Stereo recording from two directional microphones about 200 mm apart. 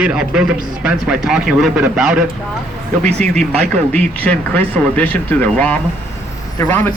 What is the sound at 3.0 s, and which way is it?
Speech, 30° right (ahead or behind).